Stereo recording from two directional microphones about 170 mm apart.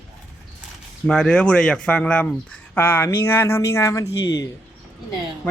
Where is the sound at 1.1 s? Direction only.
5° left (ahead or behind); by 4.5 s 20° left (ahead or behind).